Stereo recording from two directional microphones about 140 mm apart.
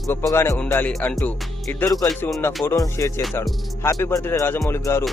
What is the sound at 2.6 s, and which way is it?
Speech, 25° left (ahead or behind).